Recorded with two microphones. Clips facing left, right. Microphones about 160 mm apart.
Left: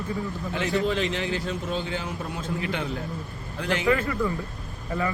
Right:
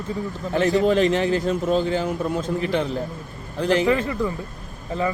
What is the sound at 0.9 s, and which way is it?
A man's voice, 45° right (ahead or behind).